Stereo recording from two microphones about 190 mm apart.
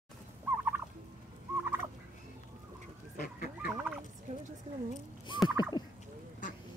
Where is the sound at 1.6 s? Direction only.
10° right (ahead or behind).